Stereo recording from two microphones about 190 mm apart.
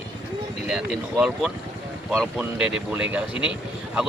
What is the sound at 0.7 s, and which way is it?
Speech, centre (ahead or behind).